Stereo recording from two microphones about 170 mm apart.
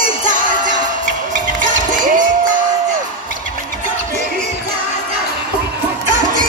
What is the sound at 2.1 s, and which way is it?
Crowd, 50° right (ahead or behind).